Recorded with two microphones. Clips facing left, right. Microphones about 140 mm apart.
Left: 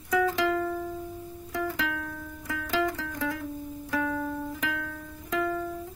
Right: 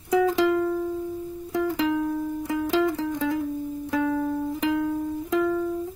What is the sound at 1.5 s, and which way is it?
Music, 20° right (ahead or behind).